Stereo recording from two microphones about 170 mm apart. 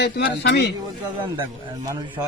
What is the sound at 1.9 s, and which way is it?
Speech, 25° right (ahead or behind).